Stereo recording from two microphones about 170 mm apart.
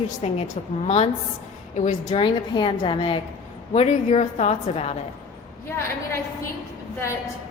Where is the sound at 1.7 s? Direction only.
45° left (ahead or behind).